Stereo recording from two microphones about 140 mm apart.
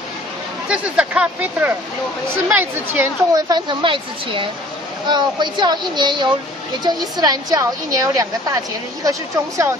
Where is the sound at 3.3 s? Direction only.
30° right (ahead or behind).